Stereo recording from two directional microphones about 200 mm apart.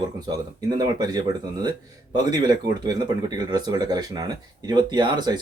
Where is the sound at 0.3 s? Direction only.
20° right (ahead or behind).